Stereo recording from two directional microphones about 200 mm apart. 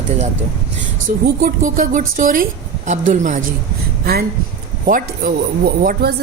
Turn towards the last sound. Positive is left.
turn(degrees=-45)  # may be behind; listen again after turning